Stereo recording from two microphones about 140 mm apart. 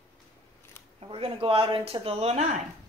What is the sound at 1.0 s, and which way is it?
Speech, 40° right (ahead or behind).